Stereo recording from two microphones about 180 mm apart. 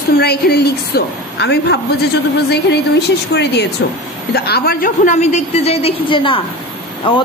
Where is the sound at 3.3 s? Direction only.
70° left (ahead or behind); by 7.2 s 30° left (ahead or behind).